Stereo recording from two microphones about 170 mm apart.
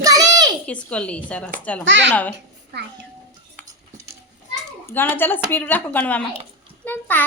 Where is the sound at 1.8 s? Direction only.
90° right.